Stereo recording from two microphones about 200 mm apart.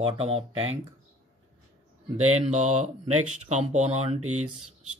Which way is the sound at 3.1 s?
90° right.